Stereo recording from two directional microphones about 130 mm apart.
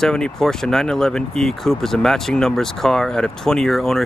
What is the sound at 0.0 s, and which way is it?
Speech, 5° left (ahead or behind).